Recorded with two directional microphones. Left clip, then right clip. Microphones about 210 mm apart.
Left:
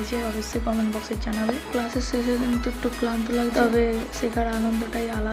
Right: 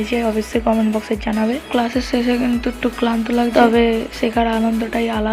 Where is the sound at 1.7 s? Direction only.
25° right (ahead or behind).